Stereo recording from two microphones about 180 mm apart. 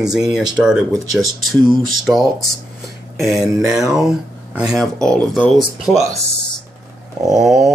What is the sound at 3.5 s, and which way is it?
Speech, 5° right (ahead or behind).